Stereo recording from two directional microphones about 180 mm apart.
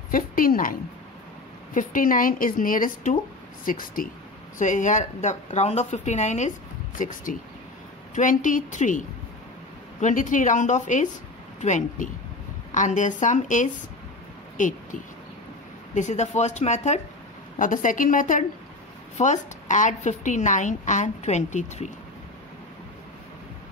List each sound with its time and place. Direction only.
0.1 s a woman's voice: 50° left (ahead or behind)
15.9 s a woman's voice: 40° left (ahead or behind)